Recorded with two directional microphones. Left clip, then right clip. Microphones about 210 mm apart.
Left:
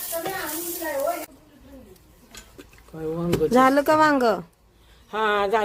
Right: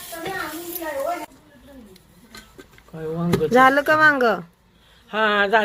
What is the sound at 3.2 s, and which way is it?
Speech, 10° left (ahead or behind).